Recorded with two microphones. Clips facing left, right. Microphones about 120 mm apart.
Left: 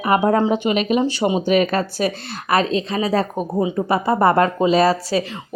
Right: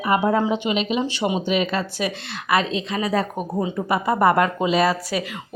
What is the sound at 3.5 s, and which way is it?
Speech, 15° left (ahead or behind).